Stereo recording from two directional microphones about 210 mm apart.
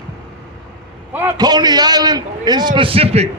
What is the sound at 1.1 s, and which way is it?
A man's voice, 10° right (ahead or behind).